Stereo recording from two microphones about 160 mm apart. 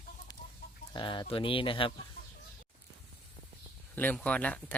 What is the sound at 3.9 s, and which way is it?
Speech, 10° left (ahead or behind).